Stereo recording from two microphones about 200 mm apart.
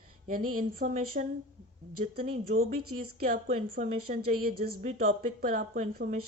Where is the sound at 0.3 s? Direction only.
45° right (ahead or behind).